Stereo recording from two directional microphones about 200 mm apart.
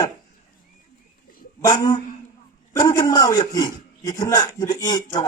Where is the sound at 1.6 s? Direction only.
20° left (ahead or behind).